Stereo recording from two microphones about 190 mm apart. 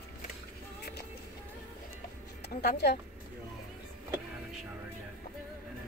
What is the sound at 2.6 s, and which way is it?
Speech, 60° left (ahead or behind).